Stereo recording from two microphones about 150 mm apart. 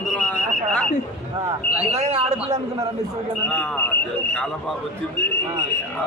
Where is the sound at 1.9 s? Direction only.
45° right (ahead or behind).